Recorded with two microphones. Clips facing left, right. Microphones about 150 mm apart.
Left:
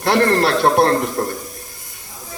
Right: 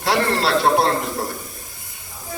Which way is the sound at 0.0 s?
55° left (ahead or behind).